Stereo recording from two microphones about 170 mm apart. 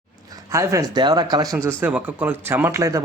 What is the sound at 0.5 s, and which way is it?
Speech, 20° right (ahead or behind).